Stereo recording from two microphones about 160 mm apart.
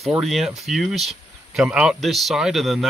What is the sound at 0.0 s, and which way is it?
Speech, centre (ahead or behind).